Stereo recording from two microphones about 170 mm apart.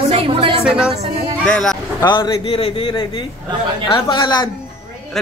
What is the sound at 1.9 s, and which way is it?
Speech, 25° left (ahead or behind).